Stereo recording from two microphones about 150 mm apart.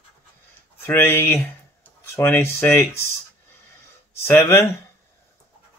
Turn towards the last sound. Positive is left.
turn(degrees=15)  # may be behind; listen again after turning